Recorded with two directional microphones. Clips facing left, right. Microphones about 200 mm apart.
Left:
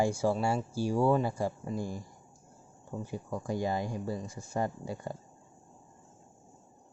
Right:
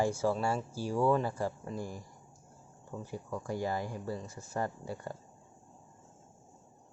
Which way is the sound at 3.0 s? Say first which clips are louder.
Left 2 dB; 15° left (ahead or behind).